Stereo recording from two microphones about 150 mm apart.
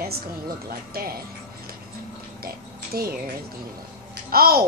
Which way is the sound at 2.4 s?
90° right.